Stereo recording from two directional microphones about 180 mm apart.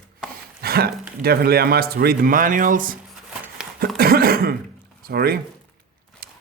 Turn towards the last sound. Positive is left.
turn(degrees=-60)  # may be behind; listen again after turning